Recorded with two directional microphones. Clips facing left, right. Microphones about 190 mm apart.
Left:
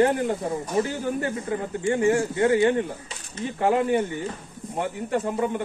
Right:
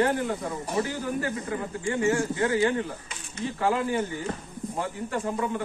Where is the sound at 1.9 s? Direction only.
30° left (ahead or behind).